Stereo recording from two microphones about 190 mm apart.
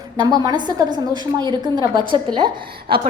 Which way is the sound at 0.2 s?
20° right (ahead or behind).